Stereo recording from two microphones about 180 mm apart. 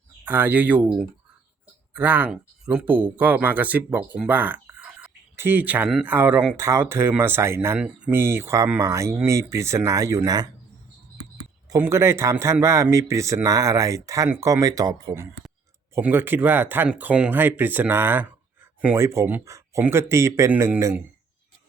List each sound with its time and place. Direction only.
0.3 s speech: 10° right (ahead or behind)
11.7 s speech: 15° right (ahead or behind)